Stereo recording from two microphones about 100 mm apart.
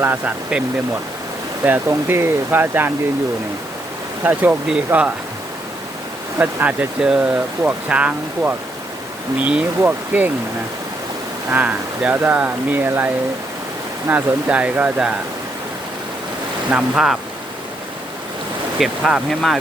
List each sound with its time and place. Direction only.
0.0 s speech: 20° right (ahead or behind)
1.6 s speech: 20° right (ahead or behind)
4.2 s speech: 20° right (ahead or behind)
6.4 s speech: 15° right (ahead or behind)
11.5 s speech: 15° right (ahead or behind)
14.1 s speech: 20° right (ahead or behind)
16.6 s speech: 15° right (ahead or behind)
18.8 s speech: 5° right (ahead or behind)